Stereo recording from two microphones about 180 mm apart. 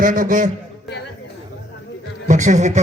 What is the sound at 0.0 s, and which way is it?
Speech, 50° right (ahead or behind).